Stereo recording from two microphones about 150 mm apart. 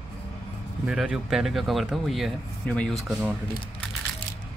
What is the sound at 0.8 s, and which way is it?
Speech, 5° right (ahead or behind).